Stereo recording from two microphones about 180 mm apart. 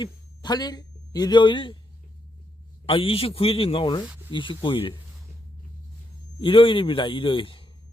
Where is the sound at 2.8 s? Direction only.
30° left (ahead or behind).